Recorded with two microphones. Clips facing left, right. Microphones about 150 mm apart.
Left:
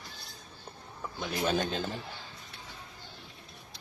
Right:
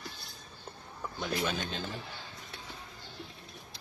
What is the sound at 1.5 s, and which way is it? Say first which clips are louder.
Speech: left 7 dB; 50° left (ahead or behind).